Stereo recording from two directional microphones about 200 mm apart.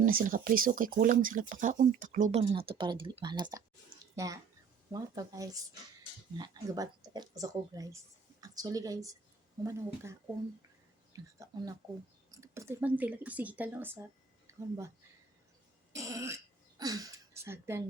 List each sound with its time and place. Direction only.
0.0 s speech: 45° right (ahead or behind); by 17.8 s 15° right (ahead or behind)